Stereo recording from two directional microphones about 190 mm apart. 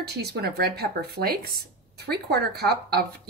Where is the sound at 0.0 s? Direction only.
60° right (ahead or behind).